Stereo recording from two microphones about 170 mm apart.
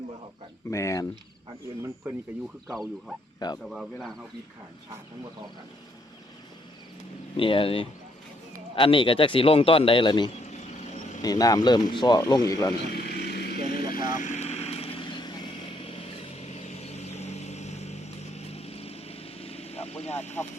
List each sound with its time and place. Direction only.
0.7 s speech: 20° left (ahead or behind)
2.6 s speech: centre (ahead or behind)
3.4 s speech: 25° left (ahead or behind)
7.3 s a man's voice: 30° left (ahead or behind)
12.7 s vehicle: 70° left (ahead or behind)
14.1 s vehicle: 45° left (ahead or behind)